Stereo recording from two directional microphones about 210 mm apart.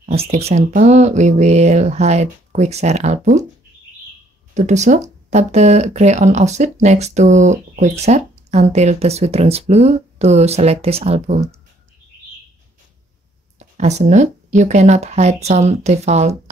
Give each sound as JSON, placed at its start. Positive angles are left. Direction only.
{"t": 0.0, "sound": "speech", "side_deg": -30}
{"t": 4.6, "sound": "speech", "side_deg": -35}
{"t": 13.6, "sound": "speech", "side_deg": -30}